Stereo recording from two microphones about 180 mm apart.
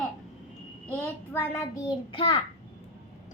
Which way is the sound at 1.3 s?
10° left (ahead or behind).